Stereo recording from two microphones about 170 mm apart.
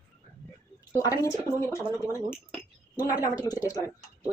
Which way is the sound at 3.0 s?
20° left (ahead or behind).